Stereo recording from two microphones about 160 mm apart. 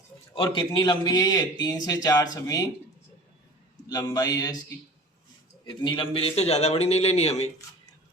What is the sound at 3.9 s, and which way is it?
Speech, 25° left (ahead or behind).